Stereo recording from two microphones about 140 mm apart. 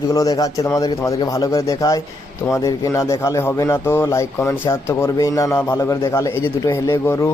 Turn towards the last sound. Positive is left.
turn(degrees=20)  # may be behind; listen again after turning